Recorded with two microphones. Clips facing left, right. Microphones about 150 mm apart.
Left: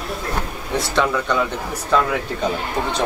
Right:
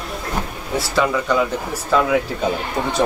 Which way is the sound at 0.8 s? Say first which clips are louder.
Right 1 dB; 5° right (ahead or behind).